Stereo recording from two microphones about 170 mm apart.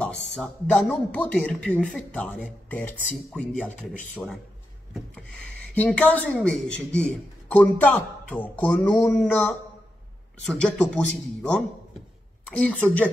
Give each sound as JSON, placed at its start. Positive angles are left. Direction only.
{"t": 0.0, "sound": "speech", "side_deg": 10}
{"t": 5.8, "sound": "a woman's voice", "side_deg": 10}